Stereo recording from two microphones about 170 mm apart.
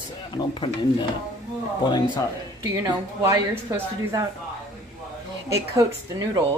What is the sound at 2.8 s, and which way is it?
Speech, 15° right (ahead or behind).